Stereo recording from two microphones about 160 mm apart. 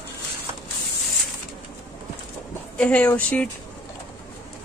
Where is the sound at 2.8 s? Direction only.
10° left (ahead or behind).